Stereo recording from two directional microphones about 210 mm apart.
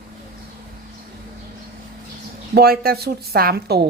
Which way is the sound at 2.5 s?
45° right (ahead or behind).